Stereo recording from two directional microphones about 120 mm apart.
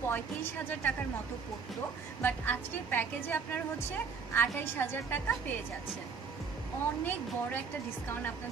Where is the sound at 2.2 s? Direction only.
15° left (ahead or behind).